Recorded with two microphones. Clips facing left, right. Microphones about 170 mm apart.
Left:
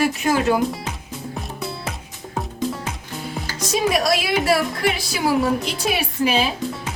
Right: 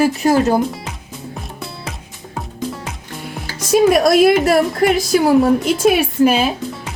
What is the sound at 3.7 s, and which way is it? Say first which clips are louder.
A woman's voice: right 8 dB; 50° right (ahead or behind).